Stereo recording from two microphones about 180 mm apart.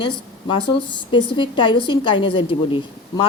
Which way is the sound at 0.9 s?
25° left (ahead or behind).